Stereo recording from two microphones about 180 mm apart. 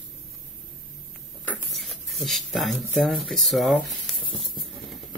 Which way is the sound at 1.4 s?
5° left (ahead or behind).